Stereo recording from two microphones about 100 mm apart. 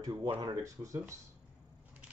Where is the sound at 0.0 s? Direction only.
40° right (ahead or behind).